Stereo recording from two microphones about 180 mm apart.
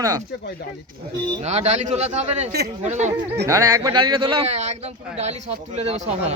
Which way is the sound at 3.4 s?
20° right (ahead or behind).